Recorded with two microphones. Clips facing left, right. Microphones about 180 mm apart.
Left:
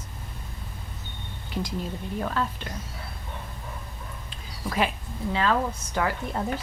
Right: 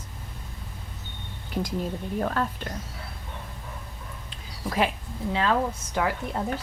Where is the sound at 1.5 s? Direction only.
50° right (ahead or behind).